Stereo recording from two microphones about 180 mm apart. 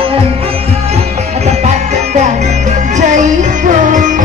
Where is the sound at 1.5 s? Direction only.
40° right (ahead or behind).